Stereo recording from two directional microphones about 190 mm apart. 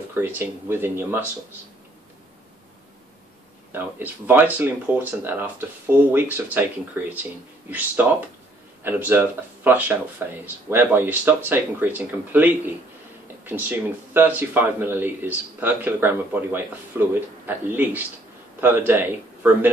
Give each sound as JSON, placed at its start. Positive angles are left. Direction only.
{"t": 0.1, "sound": "speech", "side_deg": -10}
{"t": 3.7, "sound": "speech", "side_deg": -10}